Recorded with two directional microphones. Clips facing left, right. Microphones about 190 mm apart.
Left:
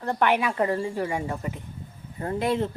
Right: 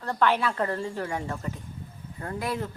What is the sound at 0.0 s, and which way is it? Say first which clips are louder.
Speech: left 2 dB; 15° left (ahead or behind).